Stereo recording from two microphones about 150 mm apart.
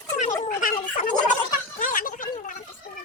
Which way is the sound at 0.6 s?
65° left (ahead or behind).